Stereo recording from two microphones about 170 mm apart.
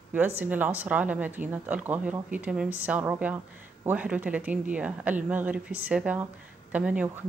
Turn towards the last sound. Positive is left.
turn(degrees=-5)  # may be behind; listen again after turning